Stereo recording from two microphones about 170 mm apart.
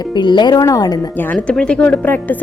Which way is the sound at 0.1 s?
25° left (ahead or behind).